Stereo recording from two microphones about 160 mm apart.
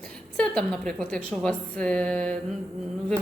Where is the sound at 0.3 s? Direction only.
5° left (ahead or behind).